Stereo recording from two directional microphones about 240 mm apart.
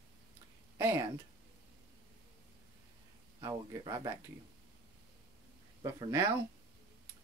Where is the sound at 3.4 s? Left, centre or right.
Centre.